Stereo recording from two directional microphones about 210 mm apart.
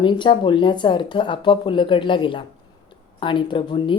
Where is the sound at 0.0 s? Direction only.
20° left (ahead or behind).